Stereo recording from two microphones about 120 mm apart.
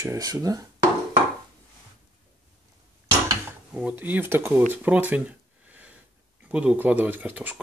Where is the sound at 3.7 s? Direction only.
15° right (ahead or behind).